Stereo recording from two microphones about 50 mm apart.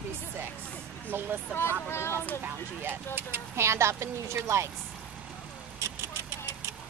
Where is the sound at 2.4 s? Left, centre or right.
Right.